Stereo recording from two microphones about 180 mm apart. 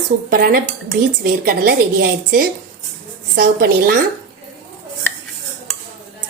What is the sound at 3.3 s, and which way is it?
Speech, 60° right (ahead or behind).